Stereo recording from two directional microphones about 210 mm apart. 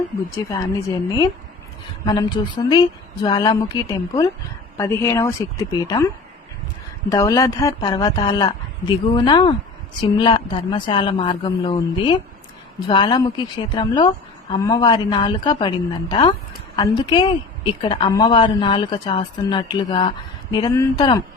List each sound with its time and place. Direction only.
0.3 s a woman's voice: 15° left (ahead or behind)
2.6 s a woman's voice: 20° left (ahead or behind)
7.1 s a woman's voice: 15° left (ahead or behind)